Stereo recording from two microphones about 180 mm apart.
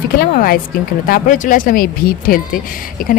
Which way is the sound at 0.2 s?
55° left (ahead or behind).